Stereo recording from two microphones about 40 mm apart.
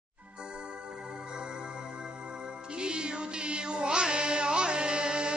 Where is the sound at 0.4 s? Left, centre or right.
Right.